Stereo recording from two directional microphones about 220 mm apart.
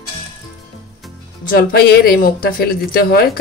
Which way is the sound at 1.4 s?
45° left (ahead or behind).